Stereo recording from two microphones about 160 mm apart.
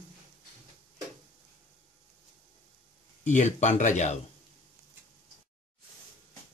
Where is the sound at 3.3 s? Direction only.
45° left (ahead or behind).